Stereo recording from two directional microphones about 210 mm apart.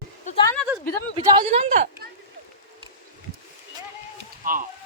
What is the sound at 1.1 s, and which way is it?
Speech, 25° right (ahead or behind).